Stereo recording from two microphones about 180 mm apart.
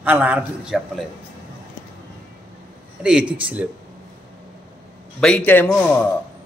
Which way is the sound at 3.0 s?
5° right (ahead or behind).